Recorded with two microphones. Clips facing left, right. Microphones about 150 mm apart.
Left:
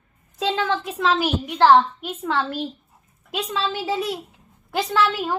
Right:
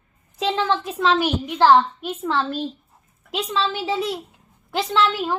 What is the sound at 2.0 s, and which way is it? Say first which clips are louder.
A woman's voice: right 1 dB; 15° left (ahead or behind).